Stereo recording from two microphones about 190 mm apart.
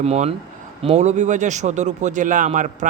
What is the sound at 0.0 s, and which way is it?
Speech, 35° right (ahead or behind).